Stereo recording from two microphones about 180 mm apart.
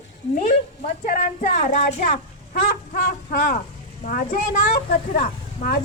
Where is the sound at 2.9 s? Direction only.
55° left (ahead or behind).